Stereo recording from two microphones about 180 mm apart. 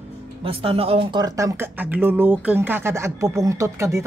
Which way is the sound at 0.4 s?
30° right (ahead or behind).